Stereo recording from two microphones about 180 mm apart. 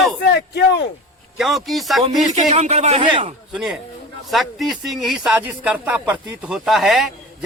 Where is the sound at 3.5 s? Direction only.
Centre (ahead or behind).